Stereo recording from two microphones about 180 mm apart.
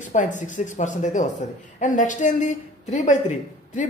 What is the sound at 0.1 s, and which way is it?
A woman's voice, 45° left (ahead or behind).